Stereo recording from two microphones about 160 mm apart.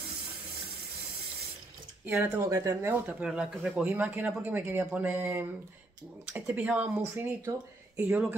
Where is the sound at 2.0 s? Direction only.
15° right (ahead or behind).